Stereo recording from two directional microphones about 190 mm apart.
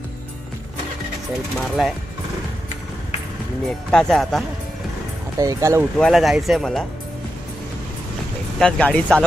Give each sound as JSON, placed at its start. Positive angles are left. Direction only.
{"t": 1.6, "sound": "speech", "side_deg": 0}
{"t": 3.9, "sound": "speech", "side_deg": 0}
{"t": 5.4, "sound": "speech", "side_deg": -15}
{"t": 5.9, "sound": "speech", "side_deg": 0}
{"t": 8.5, "sound": "speech", "side_deg": 5}